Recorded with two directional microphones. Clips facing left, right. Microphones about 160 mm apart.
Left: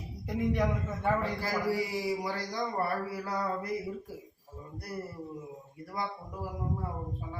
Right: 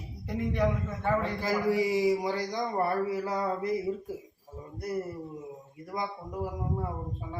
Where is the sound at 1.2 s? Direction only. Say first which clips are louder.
Right 3 dB; 20° right (ahead or behind).